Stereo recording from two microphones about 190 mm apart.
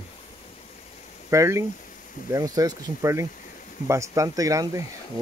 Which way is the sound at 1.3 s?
15° right (ahead or behind).